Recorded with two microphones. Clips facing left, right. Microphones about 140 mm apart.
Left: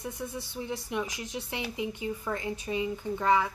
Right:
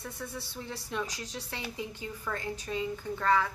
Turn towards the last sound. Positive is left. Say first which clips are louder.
# left 2 dB
turn(degrees=15)  # may be behind; listen again after turning